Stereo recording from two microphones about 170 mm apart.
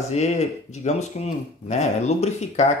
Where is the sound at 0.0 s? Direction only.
40° left (ahead or behind).